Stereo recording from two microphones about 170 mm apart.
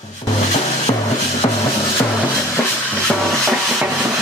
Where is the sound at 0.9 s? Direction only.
25° left (ahead or behind).